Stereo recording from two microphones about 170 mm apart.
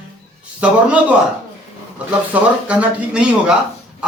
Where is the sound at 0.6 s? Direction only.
10° right (ahead or behind).